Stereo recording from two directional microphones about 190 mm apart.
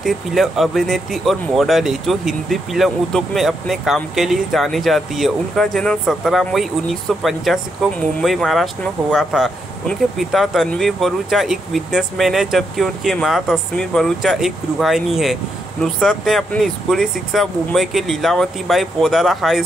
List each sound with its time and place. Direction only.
0.0 s speech: centre (ahead or behind)